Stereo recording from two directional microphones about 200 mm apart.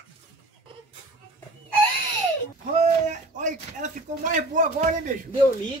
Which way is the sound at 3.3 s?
40° right (ahead or behind).